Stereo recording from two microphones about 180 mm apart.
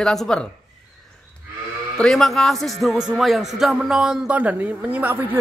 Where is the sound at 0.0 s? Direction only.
Centre (ahead or behind).